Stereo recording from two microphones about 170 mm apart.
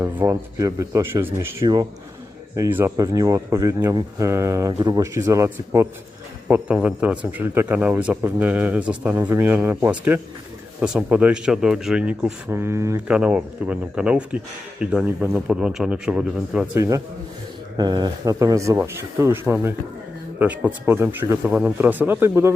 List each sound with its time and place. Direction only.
0.0 s speech: 15° right (ahead or behind)
13.1 s speech: 5° right (ahead or behind)
16.7 s speech: 20° right (ahead or behind)